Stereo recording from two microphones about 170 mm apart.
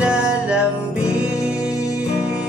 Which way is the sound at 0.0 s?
5° right (ahead or behind).